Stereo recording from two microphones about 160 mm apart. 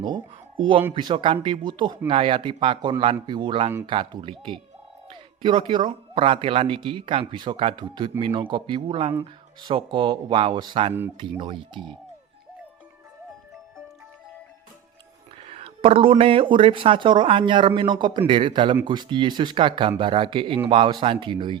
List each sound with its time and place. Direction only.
0.0 s speech: 30° right (ahead or behind)
15.4 s speech: 35° right (ahead or behind)